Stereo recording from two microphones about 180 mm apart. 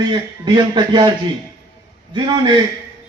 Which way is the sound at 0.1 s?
25° right (ahead or behind).